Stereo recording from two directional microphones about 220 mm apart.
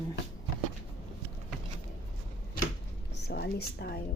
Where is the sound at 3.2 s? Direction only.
45° left (ahead or behind).